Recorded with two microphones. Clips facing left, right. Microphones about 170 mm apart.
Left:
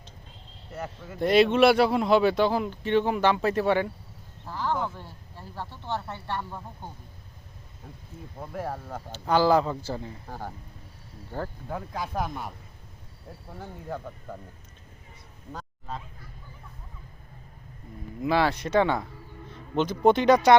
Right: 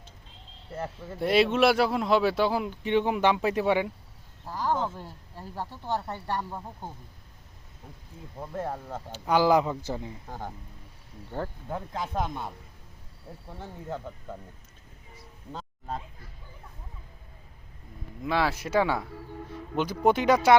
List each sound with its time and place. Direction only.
1.2 s speech: 5° right (ahead or behind)
5.9 s speech: 40° right (ahead or behind)
9.1 s speech: 10° right (ahead or behind)
11.3 s speech: 20° right (ahead or behind)
18.2 s speech: centre (ahead or behind)